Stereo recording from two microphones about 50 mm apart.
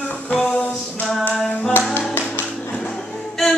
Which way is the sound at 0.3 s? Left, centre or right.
Left.